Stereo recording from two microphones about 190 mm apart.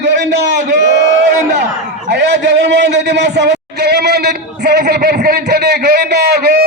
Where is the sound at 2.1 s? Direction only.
60° right (ahead or behind).